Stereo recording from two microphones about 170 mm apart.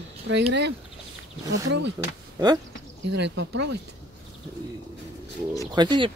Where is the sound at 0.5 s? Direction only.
90° right.